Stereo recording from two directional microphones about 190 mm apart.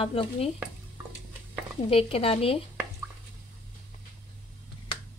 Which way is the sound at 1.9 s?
30° left (ahead or behind).